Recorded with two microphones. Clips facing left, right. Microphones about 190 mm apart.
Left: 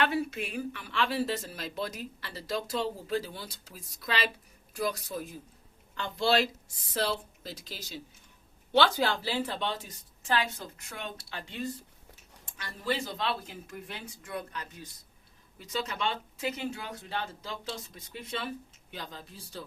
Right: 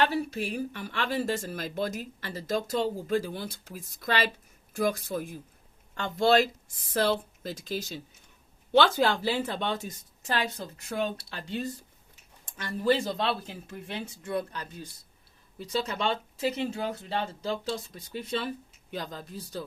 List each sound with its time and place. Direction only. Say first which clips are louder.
0.0 s speech: right 2 dB; 35° right (ahead or behind)
10.8 s speech: right 13 dB; 35° right (ahead or behind)
12.5 s speech: right 7 dB; 45° right (ahead or behind)
13.7 s speech: right 5 dB; 30° right (ahead or behind)